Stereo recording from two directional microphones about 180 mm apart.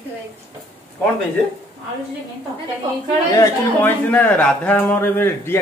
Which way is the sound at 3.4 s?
10° left (ahead or behind).